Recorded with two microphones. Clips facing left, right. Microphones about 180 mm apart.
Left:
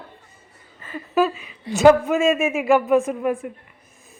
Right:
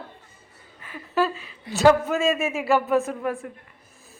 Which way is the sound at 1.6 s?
20° left (ahead or behind).